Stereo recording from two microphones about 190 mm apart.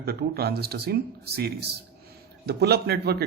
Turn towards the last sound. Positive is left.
turn(degrees=-60)  # may be behind; listen again after turning